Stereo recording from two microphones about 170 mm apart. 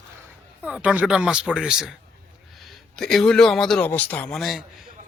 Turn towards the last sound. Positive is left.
turn(degrees=0)  # may be behind; listen again after turning